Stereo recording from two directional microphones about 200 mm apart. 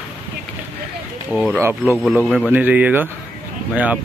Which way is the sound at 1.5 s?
15° right (ahead or behind).